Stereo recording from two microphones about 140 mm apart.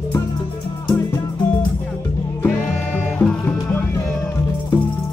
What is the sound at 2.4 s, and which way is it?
Music, 15° left (ahead or behind).